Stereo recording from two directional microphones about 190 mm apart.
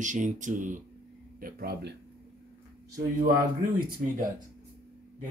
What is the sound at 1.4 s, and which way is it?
Speech, 55° right (ahead or behind).